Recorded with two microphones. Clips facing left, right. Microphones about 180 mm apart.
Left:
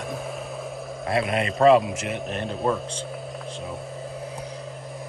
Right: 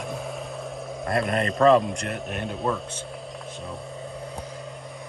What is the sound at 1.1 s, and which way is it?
A man's voice, 5° left (ahead or behind).